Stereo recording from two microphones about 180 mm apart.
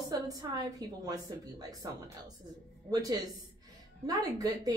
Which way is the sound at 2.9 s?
20° right (ahead or behind).